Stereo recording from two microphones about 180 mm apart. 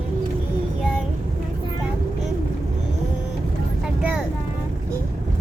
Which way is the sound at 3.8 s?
5° right (ahead or behind).